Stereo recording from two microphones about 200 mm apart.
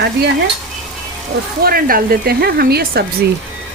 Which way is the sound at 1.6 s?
45° right (ahead or behind).